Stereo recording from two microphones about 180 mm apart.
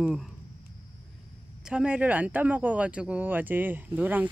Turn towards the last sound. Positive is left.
turn(degrees=-10)  # may be behind; listen again after turning